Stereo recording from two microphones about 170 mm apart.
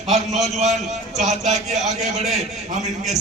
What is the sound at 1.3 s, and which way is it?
A man's voice, 45° right (ahead or behind).